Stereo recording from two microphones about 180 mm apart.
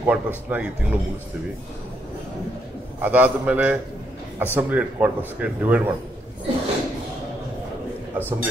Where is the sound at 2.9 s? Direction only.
10° right (ahead or behind).